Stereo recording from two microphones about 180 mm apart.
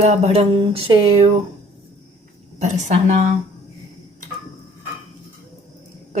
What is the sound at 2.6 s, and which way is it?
Speech, 40° right (ahead or behind).